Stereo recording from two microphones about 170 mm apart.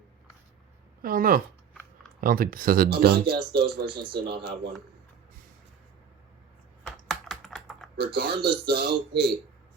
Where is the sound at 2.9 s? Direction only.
70° right (ahead or behind).